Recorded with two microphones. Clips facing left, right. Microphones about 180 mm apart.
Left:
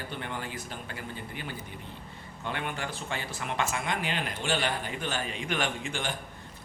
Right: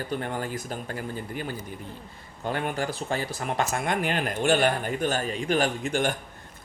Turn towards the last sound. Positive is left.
turn(degrees=-45)  # may be behind; listen again after turning